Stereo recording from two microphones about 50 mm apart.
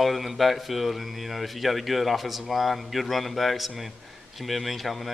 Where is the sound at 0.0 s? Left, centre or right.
Centre.